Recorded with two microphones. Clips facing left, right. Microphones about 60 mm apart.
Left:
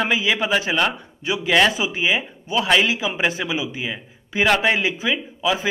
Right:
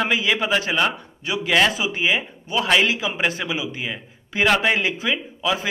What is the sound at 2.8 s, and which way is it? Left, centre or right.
A man's voice, centre.